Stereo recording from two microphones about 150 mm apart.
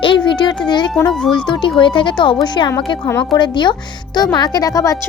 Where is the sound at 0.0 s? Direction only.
35° left (ahead or behind).